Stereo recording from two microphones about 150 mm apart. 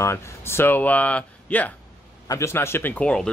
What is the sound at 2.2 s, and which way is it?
A man's voice, 20° left (ahead or behind).